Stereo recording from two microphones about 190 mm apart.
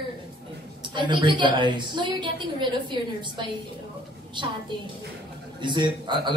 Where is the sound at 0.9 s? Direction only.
25° right (ahead or behind).